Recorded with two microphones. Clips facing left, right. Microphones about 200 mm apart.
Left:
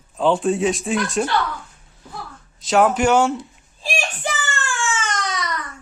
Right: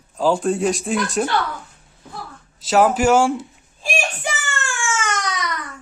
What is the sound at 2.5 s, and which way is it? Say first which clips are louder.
Speech: right 1 dB; 5° right (ahead or behind).